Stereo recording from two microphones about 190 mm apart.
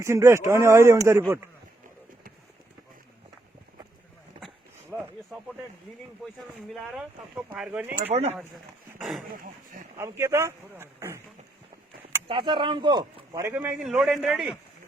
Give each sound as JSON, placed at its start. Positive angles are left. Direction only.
{"t": 0.0, "sound": "speech", "side_deg": -15}
{"t": 4.4, "sound": "a sound", "side_deg": 0}
{"t": 6.2, "sound": "speech", "side_deg": 0}
{"t": 8.1, "sound": "speech", "side_deg": -35}
{"t": 9.0, "sound": "speech", "side_deg": 0}
{"t": 10.0, "sound": "speech", "side_deg": -15}
{"t": 12.3, "sound": "speech", "side_deg": -25}